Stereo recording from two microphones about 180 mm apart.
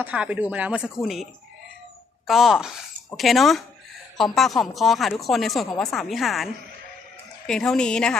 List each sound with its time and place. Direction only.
0.0 s speech: 5° right (ahead or behind)